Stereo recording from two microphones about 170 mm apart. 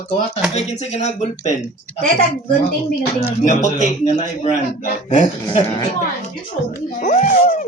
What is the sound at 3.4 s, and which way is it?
A man's voice, 45° left (ahead or behind).